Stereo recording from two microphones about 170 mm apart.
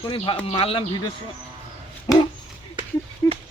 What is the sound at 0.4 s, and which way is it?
Speech, 35° left (ahead or behind).